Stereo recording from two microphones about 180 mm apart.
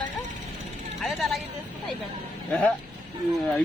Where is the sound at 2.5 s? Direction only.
5° left (ahead or behind).